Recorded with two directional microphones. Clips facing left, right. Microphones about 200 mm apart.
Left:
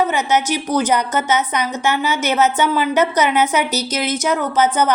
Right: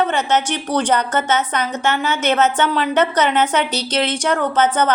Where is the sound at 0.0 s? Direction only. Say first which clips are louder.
Left 1 dB; 10° left (ahead or behind).